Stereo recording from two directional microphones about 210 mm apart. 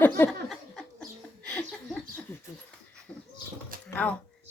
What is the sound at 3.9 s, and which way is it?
Speech, 5° left (ahead or behind).